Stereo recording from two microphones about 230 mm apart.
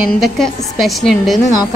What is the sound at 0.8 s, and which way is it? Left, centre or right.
Speech, centre.